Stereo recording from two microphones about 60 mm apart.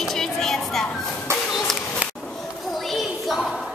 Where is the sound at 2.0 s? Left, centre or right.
Right.